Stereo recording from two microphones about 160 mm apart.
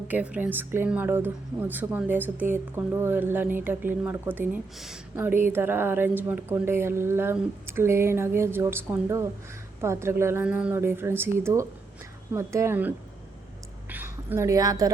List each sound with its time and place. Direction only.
0.1 s speech: 10° right (ahead or behind)
13.9 s a woman's voice: 15° right (ahead or behind)